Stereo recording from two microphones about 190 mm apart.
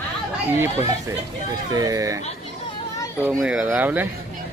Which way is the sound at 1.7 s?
20° right (ahead or behind).